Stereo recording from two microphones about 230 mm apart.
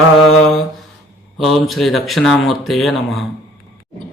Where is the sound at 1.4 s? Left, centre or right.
Centre.